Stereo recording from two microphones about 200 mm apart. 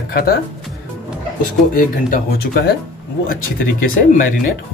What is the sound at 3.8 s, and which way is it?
Speech, 45° left (ahead or behind).